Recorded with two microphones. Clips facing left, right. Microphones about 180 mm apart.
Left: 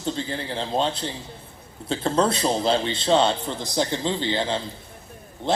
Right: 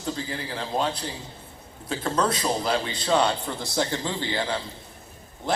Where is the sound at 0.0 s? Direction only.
30° left (ahead or behind).